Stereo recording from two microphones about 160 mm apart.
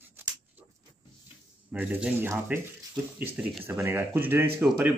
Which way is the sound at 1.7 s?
10° right (ahead or behind).